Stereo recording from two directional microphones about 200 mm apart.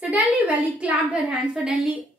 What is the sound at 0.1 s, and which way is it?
A woman's voice, 5° right (ahead or behind).